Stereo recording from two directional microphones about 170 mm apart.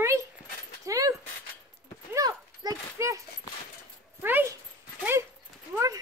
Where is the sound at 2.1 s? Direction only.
20° right (ahead or behind).